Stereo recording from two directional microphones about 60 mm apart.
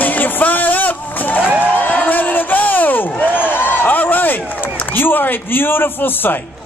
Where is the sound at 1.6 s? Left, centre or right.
Left.